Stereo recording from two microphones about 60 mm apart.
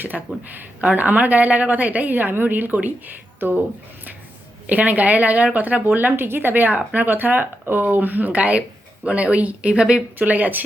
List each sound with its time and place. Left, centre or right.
0.1 s speech: centre
0.5 s a woman's voice: right
4.6 s a woman's voice: right
10.2 s a woman's voice: right